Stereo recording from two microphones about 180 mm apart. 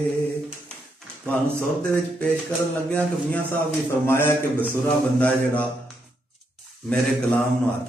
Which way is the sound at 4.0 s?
15° left (ahead or behind).